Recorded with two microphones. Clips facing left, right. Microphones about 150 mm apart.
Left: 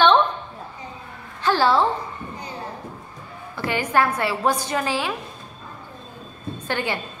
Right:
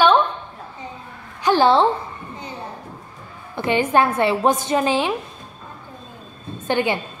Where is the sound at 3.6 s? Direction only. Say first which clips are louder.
Right 4 dB; 20° right (ahead or behind).